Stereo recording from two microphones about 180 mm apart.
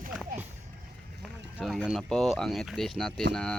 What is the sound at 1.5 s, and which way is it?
Speech, centre (ahead or behind).